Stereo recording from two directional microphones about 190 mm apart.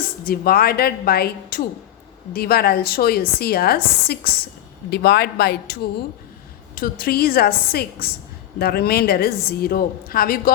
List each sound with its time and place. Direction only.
0.3 s a woman's voice: 50° left (ahead or behind)
7.0 s a woman's voice: 55° left (ahead or behind)